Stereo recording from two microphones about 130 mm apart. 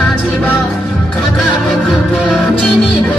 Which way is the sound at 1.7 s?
Centre (ahead or behind).